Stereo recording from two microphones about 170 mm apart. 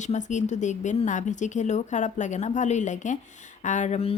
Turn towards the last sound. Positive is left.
turn(degrees=40)  # may be behind; listen again after turning